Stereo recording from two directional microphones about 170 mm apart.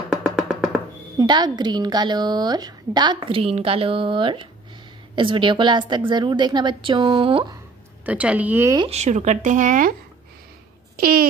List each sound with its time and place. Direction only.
0.1 s music: 5° right (ahead or behind)
1.1 s a woman's voice: 25° right (ahead or behind)
8.0 s a woman's voice: 10° right (ahead or behind)
8.7 s speech: 35° right (ahead or behind)
11.0 s speech: 60° right (ahead or behind)